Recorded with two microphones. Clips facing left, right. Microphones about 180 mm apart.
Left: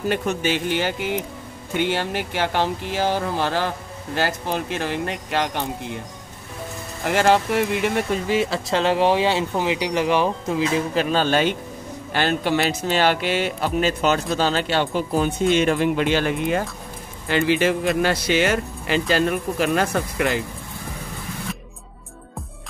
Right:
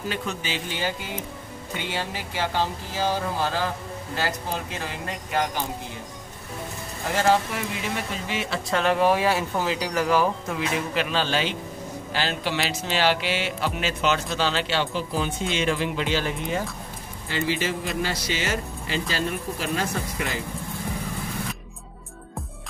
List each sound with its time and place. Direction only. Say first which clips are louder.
0.1 s speech: left 10 dB; 60° left (ahead or behind)
7.1 s speech: left 4 dB; 65° left (ahead or behind); by 10.7 s 25° left (ahead or behind)
11.0 s speech: left 6 dB; 45° left (ahead or behind); by 20.2 s 65° left (ahead or behind)